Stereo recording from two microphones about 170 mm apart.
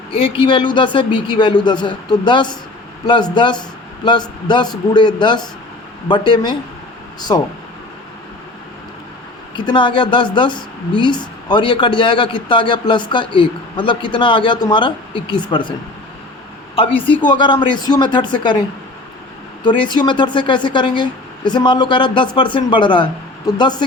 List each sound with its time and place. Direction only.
0.1 s a woman's voice: 30° left (ahead or behind)
9.6 s a woman's voice: 30° left (ahead or behind)
16.7 s a woman's voice: 30° left (ahead or behind)
19.6 s a woman's voice: 30° left (ahead or behind)